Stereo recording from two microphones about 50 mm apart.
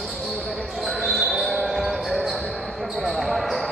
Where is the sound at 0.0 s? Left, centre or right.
Centre.